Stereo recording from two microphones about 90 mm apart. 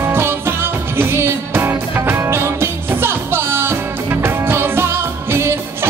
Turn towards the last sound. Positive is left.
turn(degrees=-30)  # may be behind; listen again after turning